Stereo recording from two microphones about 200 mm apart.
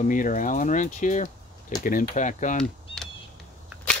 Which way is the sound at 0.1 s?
40° left (ahead or behind).